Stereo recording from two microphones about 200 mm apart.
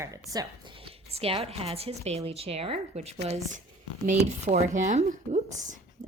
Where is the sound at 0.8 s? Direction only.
30° right (ahead or behind).